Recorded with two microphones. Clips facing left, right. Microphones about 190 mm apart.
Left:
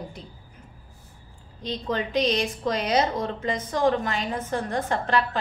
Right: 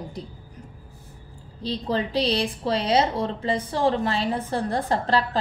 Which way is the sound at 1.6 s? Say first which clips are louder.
Right 2 dB; 35° right (ahead or behind).